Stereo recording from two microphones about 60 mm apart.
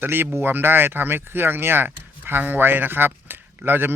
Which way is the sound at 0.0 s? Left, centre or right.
Right.